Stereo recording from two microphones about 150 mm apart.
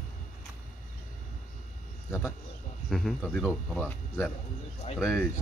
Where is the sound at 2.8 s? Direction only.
Centre (ahead or behind).